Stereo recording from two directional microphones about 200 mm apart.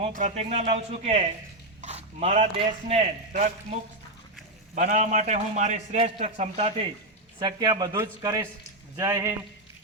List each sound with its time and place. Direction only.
0.0 s a man's voice: 40° right (ahead or behind)
4.7 s a man's voice: 40° right (ahead or behind); by 9.3 s 15° right (ahead or behind)